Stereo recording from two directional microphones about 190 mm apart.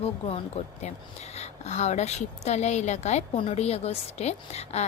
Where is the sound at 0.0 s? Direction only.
35° left (ahead or behind).